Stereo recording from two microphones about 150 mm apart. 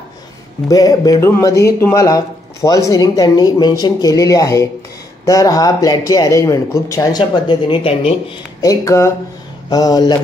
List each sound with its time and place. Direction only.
0.7 s speech: 25° left (ahead or behind)
8.5 s speech: 20° left (ahead or behind)